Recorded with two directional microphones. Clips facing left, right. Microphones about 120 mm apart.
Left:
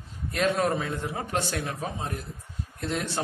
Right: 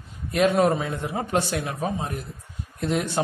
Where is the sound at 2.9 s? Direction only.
15° right (ahead or behind).